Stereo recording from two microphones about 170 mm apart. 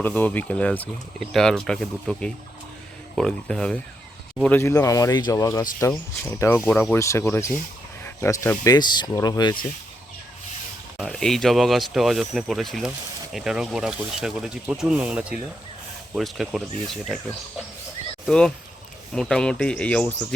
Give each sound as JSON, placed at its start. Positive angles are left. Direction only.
{"t": 0.0, "sound": "speech", "side_deg": 10}
{"t": 6.7, "sound": "speech", "side_deg": 0}
{"t": 6.9, "sound": "speech", "side_deg": 15}
{"t": 10.9, "sound": "speech", "side_deg": 0}
{"t": 18.3, "sound": "speech", "side_deg": 5}